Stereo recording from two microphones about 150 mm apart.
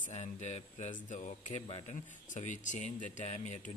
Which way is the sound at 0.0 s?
50° left (ahead or behind).